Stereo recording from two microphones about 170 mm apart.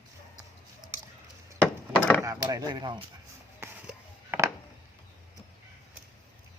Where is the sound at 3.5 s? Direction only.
10° right (ahead or behind).